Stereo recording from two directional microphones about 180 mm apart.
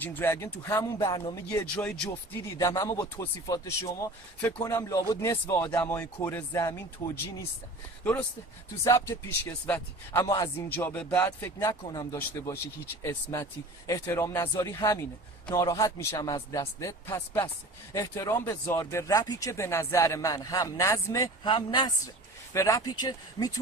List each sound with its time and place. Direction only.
0.0 s speech: 10° left (ahead or behind)
1.3 s speech: 10° left (ahead or behind)
2.6 s speech: 20° left (ahead or behind)
8.0 s speech: 10° left (ahead or behind)
8.8 s speech: 20° left (ahead or behind)